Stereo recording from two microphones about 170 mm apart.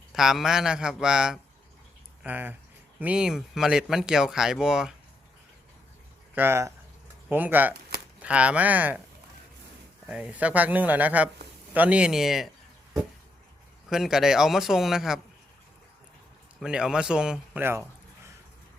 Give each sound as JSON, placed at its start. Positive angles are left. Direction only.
{"t": 0.1, "sound": "speech", "side_deg": 0}
{"t": 6.3, "sound": "speech", "side_deg": -15}
{"t": 10.1, "sound": "speech", "side_deg": -5}
{"t": 13.9, "sound": "speech", "side_deg": 0}
{"t": 16.6, "sound": "speech", "side_deg": -5}